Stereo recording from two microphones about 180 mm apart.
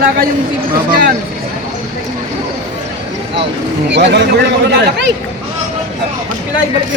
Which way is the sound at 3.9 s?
75° right (ahead or behind).